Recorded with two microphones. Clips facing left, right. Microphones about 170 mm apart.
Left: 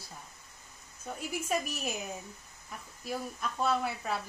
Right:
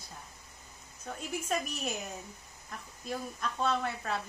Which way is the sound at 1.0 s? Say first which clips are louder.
Left 1 dB; 5° left (ahead or behind).